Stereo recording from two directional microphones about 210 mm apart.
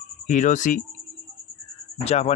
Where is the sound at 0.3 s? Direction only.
35° left (ahead or behind).